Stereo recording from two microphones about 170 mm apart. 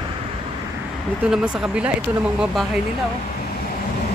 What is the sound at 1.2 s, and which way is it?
A man's voice, 5° right (ahead or behind).